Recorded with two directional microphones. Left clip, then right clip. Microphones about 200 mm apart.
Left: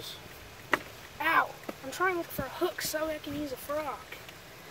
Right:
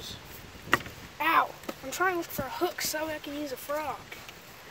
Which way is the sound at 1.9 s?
40° right (ahead or behind).